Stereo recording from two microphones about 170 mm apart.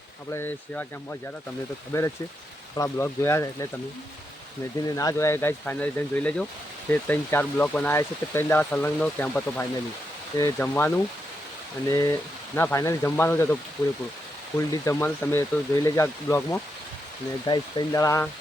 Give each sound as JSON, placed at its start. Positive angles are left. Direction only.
{"t": 0.3, "sound": "speech", "side_deg": 15}
{"t": 1.9, "sound": "speech", "side_deg": 15}
{"t": 4.9, "sound": "speech", "side_deg": 20}
{"t": 14.7, "sound": "speech", "side_deg": 15}